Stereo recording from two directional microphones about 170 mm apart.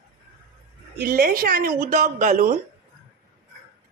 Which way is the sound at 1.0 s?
65° right (ahead or behind).